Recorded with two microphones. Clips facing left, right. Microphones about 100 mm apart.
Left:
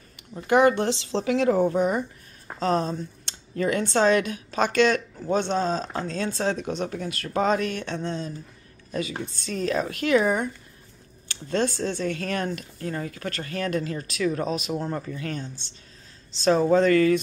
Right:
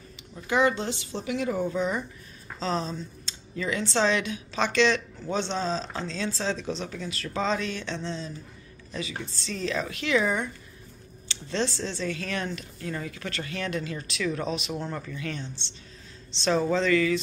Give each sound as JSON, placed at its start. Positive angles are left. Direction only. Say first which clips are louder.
{"t": 0.5, "sound": "a woman's voice", "louder": "left 5 dB", "side_deg": 60}
{"t": 1.7, "sound": "speech", "louder": "left 5 dB", "side_deg": 50}
{"t": 14.8, "sound": "speech", "louder": "left 4 dB", "side_deg": 30}